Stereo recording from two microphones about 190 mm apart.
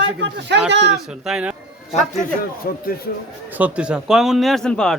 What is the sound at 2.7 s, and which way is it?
Speech, 50° left (ahead or behind).